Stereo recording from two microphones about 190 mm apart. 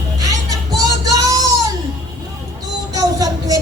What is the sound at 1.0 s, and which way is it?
Child singing, 20° right (ahead or behind).